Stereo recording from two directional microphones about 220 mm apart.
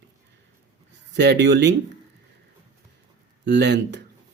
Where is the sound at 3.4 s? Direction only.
50° right (ahead or behind).